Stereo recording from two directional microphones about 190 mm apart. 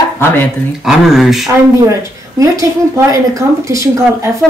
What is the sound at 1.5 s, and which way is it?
Speech, 15° right (ahead or behind).